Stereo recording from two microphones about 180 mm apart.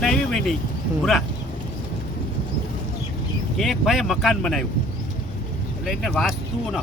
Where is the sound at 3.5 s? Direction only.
Centre (ahead or behind).